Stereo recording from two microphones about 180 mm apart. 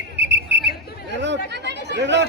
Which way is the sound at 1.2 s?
75° right (ahead or behind).